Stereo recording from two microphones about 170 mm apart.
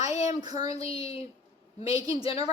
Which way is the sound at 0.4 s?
20° right (ahead or behind).